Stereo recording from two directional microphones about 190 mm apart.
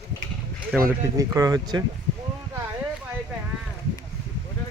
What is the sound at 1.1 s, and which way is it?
Speech, 20° right (ahead or behind).